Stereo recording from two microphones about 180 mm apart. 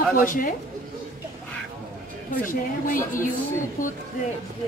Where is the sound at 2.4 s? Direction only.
50° left (ahead or behind).